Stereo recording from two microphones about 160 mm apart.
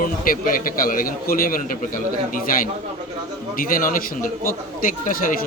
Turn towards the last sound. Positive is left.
turn(degrees=55)  # may be behind; listen again after turning